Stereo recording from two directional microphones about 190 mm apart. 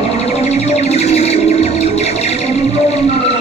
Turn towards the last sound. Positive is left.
turn(degrees=35)  # may be behind; listen again after turning